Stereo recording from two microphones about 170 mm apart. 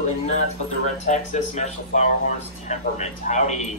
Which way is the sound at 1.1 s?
45° left (ahead or behind).